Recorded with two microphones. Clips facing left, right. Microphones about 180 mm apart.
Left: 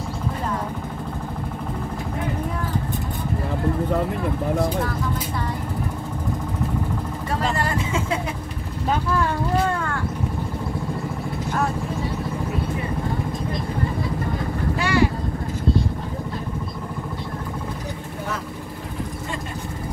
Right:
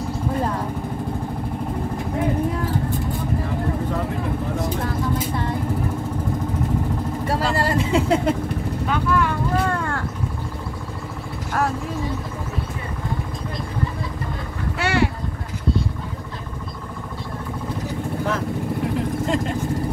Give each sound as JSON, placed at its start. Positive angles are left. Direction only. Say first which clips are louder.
{"t": 7.3, "sound": "speech", "louder": "right 2 dB", "side_deg": -35}
{"t": 8.8, "sound": "vehicle", "louder": "even", "side_deg": 35}
{"t": 14.8, "sound": "vehicle", "louder": "even", "side_deg": -70}